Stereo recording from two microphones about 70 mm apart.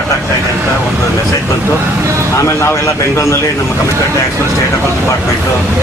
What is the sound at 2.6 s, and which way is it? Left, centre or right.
Speech, left.